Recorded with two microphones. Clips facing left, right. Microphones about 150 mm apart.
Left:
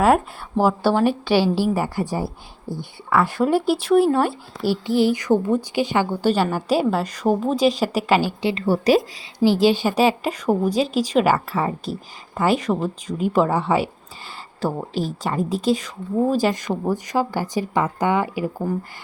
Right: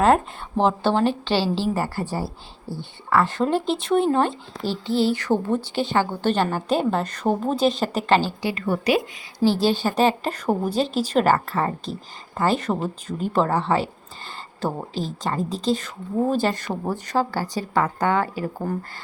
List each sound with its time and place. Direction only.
0.0 s a woman's voice: 10° left (ahead or behind)
8.4 s a woman's voice: 25° left (ahead or behind)
9.4 s a woman's voice: 15° left (ahead or behind)
10.4 s a woman's voice: 5° right (ahead or behind)